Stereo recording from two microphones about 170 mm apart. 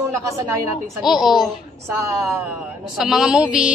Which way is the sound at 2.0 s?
15° right (ahead or behind).